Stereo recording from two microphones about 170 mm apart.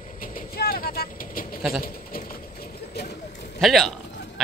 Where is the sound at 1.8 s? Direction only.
60° left (ahead or behind).